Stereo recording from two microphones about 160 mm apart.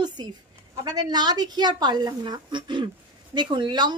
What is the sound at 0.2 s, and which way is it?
A woman's voice, 25° right (ahead or behind).